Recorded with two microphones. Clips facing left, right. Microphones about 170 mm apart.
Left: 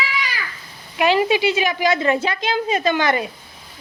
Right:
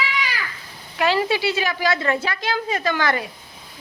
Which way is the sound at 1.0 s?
15° left (ahead or behind).